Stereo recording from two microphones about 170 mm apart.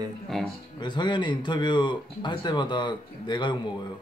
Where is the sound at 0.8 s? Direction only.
25° left (ahead or behind).